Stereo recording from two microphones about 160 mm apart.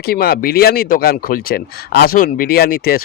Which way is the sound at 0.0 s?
70° left (ahead or behind).